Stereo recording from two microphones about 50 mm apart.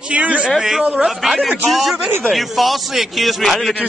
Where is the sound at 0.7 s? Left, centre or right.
Centre.